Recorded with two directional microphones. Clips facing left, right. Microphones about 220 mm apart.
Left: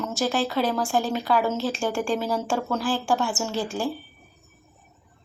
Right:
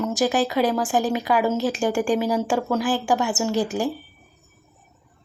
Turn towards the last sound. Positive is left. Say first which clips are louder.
# right 5 dB
turn(degrees=-15)  # may be behind; listen again after turning